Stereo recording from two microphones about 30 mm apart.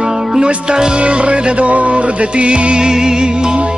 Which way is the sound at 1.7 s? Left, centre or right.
Right.